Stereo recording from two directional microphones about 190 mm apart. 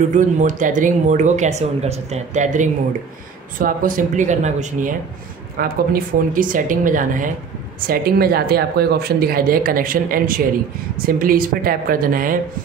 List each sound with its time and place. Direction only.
0.1 s speech: 40° right (ahead or behind)